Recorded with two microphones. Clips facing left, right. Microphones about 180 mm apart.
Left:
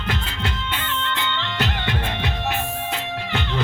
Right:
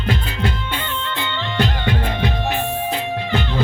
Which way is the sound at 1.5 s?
35° right (ahead or behind).